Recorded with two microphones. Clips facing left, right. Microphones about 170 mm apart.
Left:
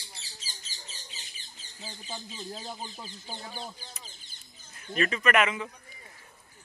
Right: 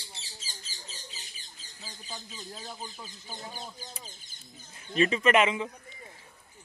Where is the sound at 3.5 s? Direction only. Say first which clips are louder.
Left 2 dB; 45° right (ahead or behind).